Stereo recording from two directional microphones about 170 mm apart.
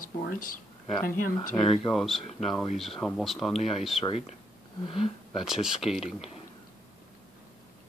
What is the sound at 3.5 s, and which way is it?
Speech, 40° left (ahead or behind).